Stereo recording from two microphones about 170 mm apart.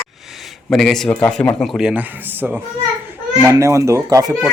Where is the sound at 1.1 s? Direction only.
10° left (ahead or behind); by 4.3 s 20° right (ahead or behind).